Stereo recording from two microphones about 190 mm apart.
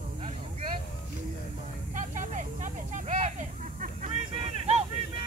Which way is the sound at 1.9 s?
40° right (ahead or behind).